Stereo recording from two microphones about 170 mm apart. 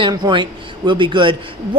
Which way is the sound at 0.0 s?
25° right (ahead or behind).